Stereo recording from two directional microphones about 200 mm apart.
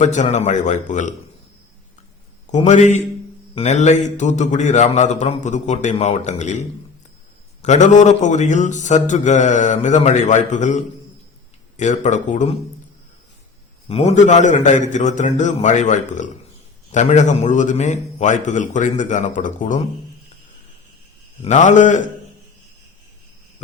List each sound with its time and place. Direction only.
0.0 s a man's voice: 35° left (ahead or behind)
2.6 s a man's voice: 35° left (ahead or behind)
13.8 s a man's voice: 30° left (ahead or behind)
21.4 s a man's voice: 35° left (ahead or behind)